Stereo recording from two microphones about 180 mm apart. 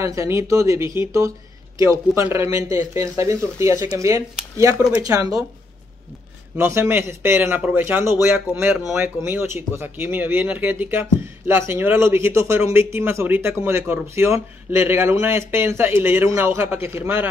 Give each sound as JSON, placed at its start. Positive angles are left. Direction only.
{"t": 0.0, "sound": "speech", "side_deg": -15}
{"t": 6.5, "sound": "speech", "side_deg": -15}